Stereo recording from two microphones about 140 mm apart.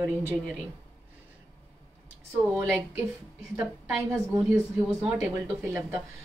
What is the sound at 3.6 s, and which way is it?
A woman's voice, 5° right (ahead or behind).